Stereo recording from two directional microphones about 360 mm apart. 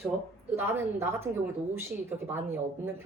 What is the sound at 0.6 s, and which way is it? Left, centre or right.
Speech, centre.